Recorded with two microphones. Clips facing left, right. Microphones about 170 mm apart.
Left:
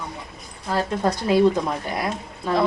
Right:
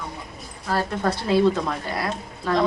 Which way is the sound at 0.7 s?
15° left (ahead or behind).